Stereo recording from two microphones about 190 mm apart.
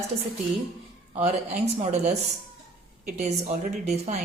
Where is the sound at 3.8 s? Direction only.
35° right (ahead or behind).